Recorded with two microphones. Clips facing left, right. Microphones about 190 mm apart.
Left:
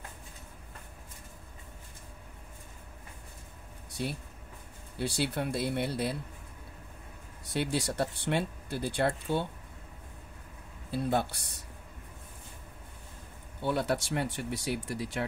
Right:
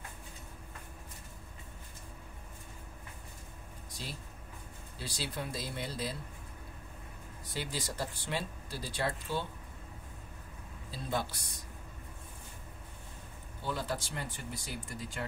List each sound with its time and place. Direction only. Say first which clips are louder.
4.9 s speech: left 8 dB; 65° left (ahead or behind)
7.5 s speech: left 8 dB; 70° left (ahead or behind)
10.9 s speech: left 7 dB; 60° left (ahead or behind)
13.6 s speech: left 7 dB; 65° left (ahead or behind)